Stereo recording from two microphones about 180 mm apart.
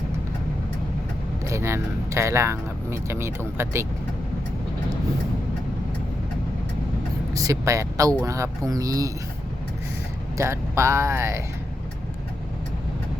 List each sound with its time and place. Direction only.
1.5 s speech: 15° right (ahead or behind)
7.3 s speech: 15° right (ahead or behind)
10.3 s speech: 15° right (ahead or behind)